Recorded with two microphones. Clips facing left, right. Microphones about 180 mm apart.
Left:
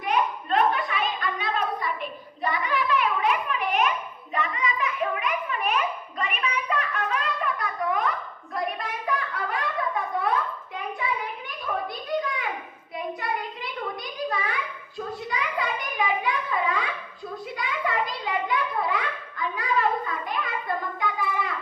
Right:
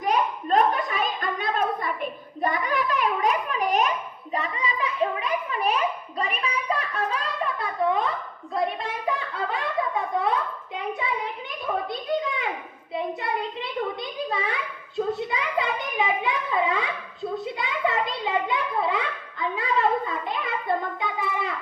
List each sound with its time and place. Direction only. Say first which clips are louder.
0.0 s hands: right 1 dB; 40° right (ahead or behind)
4.4 s children playing: left 1 dB; 30° right (ahead or behind)
8.5 s a sound: right 3 dB; 25° right (ahead or behind)